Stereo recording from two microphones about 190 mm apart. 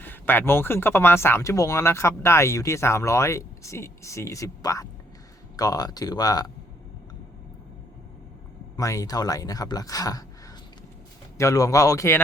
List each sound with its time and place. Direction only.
0.0 s speech: 10° left (ahead or behind)
8.7 s speech: 15° left (ahead or behind)
11.3 s speech: 15° left (ahead or behind)